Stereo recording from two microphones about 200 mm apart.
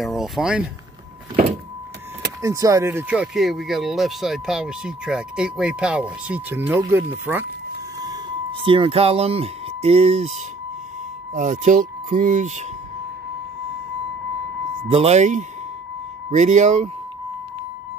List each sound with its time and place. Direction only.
0.0 s speech: centre (ahead or behind)
2.4 s speech: 15° right (ahead or behind)
8.0 s speech: 20° right (ahead or behind)
11.3 s speech: 40° right (ahead or behind)
14.9 s speech: 30° right (ahead or behind)